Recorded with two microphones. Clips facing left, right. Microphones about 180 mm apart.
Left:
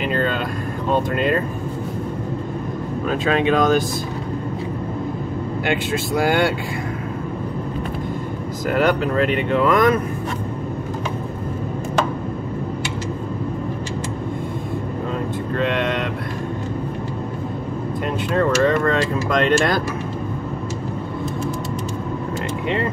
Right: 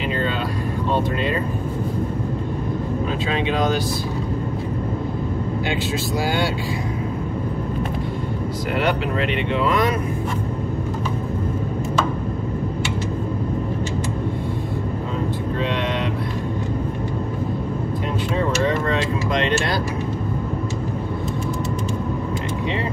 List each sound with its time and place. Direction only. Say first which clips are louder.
0.1 s speech: left 3 dB; 50° left (ahead or behind)
3.1 s speech: left 8 dB; 50° left (ahead or behind)
5.7 s speech: left 6 dB; 55° left (ahead or behind)
8.7 s speech: left 4 dB; 45° left (ahead or behind)
15.7 s a sound: left 2 dB; 50° left (ahead or behind)
18.3 s speech: left 4 dB; 55° left (ahead or behind)